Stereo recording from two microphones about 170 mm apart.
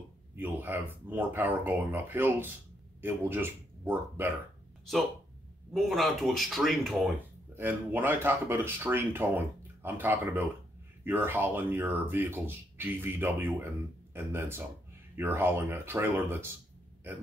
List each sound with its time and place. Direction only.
0.4 s speech: 10° right (ahead or behind)
5.7 s speech: centre (ahead or behind)
7.5 s speech: 10° right (ahead or behind)